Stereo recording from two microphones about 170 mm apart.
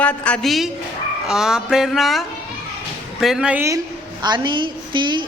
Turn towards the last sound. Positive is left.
turn(degrees=-25)  # may be behind; listen again after turning